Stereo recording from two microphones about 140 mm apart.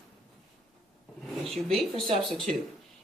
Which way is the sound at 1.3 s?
Centre (ahead or behind).